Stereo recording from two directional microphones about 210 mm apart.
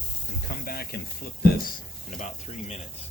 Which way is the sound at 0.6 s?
45° left (ahead or behind).